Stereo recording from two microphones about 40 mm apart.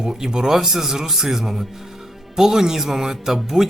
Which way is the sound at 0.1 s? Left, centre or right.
Centre.